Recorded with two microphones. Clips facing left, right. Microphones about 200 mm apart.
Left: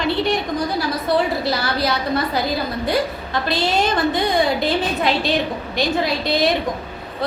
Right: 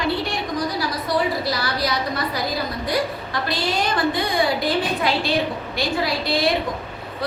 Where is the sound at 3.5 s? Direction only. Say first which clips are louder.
Left 4 dB; 25° left (ahead or behind).